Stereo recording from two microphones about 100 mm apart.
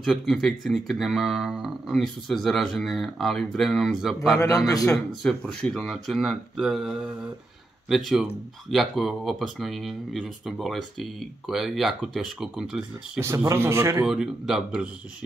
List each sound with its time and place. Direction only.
0.0 s speech: centre (ahead or behind)
13.2 s speech: 25° right (ahead or behind)
14.0 s speech: 5° right (ahead or behind)